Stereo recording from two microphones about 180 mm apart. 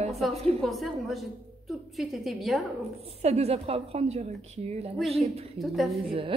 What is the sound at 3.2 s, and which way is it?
A woman's voice, 35° right (ahead or behind).